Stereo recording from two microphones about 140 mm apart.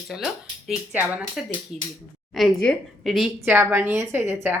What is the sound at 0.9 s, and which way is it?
A woman's voice, 10° right (ahead or behind).